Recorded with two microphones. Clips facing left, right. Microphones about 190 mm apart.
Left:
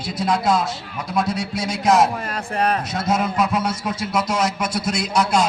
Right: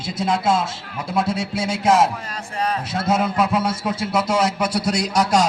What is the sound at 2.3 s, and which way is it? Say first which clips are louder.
Speech: left 3 dB; 60° left (ahead or behind).